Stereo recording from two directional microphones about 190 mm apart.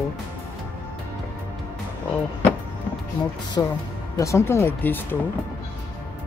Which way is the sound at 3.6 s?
20° left (ahead or behind).